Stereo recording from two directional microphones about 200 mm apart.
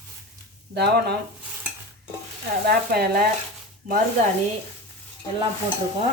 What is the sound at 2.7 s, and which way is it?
Speech, 50° right (ahead or behind).